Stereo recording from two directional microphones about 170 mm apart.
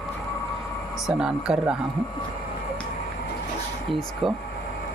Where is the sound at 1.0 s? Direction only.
5° right (ahead or behind).